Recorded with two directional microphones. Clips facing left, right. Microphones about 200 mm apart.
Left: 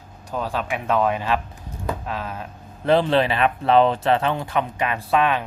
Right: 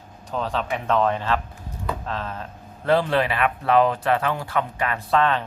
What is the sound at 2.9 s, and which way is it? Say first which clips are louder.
Speech: left 2 dB; 25° left (ahead or behind).